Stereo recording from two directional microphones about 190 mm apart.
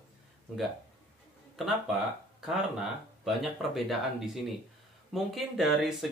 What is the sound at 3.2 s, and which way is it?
Speech, centre (ahead or behind).